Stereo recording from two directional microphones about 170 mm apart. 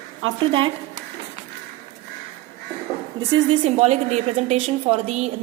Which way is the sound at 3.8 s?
40° right (ahead or behind).